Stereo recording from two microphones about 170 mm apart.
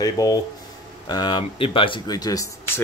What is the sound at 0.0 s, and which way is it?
Speech, 20° left (ahead or behind).